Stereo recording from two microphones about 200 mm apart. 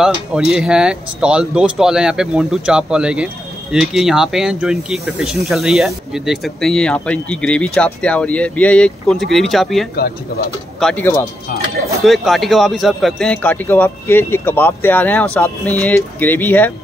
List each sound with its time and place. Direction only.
0.0 s speech: 5° right (ahead or behind)
9.9 s speech: 50° left (ahead or behind)
10.8 s speech: 5° left (ahead or behind)